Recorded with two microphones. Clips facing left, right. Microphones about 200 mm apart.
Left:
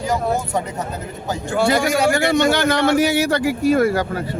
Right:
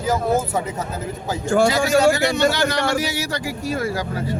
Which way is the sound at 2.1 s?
55° left (ahead or behind).